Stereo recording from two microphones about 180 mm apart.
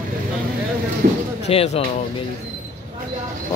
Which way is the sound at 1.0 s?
55° right (ahead or behind).